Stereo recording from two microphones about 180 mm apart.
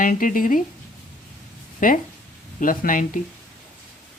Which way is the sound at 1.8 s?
45° left (ahead or behind).